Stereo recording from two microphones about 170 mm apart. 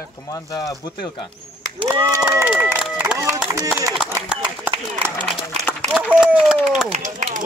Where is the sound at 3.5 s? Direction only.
20° right (ahead or behind).